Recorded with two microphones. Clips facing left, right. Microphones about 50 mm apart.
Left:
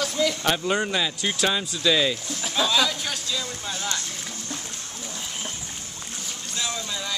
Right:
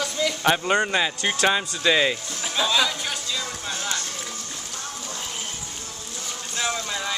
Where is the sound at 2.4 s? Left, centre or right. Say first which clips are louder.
Even; centre.